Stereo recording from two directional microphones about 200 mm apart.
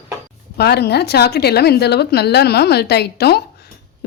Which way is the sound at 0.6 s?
55° left (ahead or behind).